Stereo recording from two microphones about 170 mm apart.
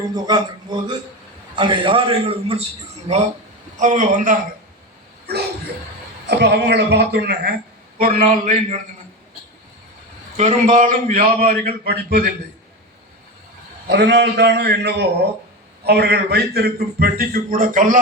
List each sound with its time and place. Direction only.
0.3 s a man's voice: 25° right (ahead or behind); by 4.4 s 50° right (ahead or behind)
6.2 s a woman's voice: 85° right
7.9 s a man's voice: 55° right (ahead or behind)
10.3 s a man's voice: 40° right (ahead or behind); by 12.3 s 70° right (ahead or behind)
13.8 s a man's voice: 90° right; by 18.0 s 50° right (ahead or behind)